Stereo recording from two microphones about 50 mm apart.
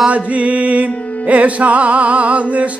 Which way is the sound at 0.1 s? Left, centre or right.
Right.